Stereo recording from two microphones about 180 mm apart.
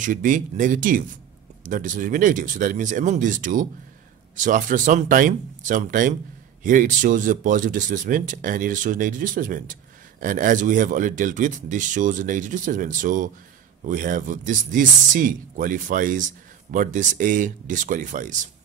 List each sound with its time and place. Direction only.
0.0 s speech: 45° right (ahead or behind)